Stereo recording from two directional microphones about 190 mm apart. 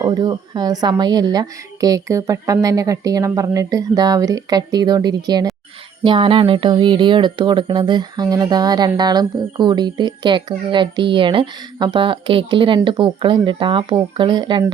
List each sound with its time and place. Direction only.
0.0 s speech: 20° right (ahead or behind)